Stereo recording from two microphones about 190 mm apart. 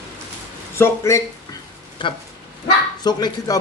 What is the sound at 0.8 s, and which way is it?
Speech, 15° left (ahead or behind).